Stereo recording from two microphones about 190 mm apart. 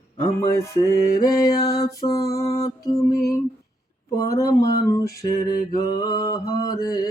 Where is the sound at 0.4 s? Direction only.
15° left (ahead or behind).